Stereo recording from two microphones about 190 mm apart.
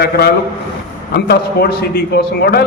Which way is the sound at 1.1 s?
55° left (ahead or behind).